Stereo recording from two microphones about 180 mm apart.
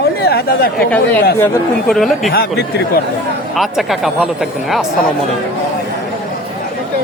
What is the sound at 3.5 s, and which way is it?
Speech, centre (ahead or behind).